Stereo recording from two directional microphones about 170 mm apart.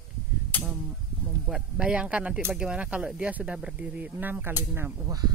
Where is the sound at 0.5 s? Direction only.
10° left (ahead or behind).